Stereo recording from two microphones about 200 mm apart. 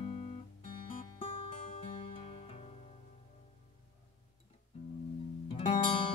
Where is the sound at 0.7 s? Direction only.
25° left (ahead or behind).